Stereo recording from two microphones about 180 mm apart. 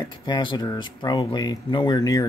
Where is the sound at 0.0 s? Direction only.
25° left (ahead or behind).